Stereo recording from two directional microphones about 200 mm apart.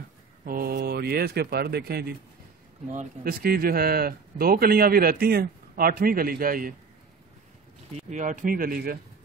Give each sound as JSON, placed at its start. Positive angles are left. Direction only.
{"t": 0.5, "sound": "a man's voice", "side_deg": -50}
{"t": 7.9, "sound": "speech", "side_deg": -35}